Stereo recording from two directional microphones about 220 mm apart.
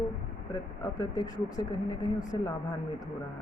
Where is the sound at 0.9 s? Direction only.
15° left (ahead or behind).